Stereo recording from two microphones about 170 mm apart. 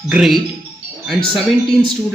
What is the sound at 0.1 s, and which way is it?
Speech, centre (ahead or behind).